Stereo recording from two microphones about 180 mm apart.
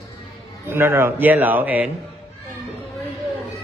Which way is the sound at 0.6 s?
15° right (ahead or behind).